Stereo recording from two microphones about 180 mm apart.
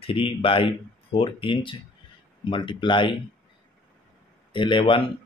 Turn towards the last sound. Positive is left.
turn(degrees=30)  # may be behind; listen again after turning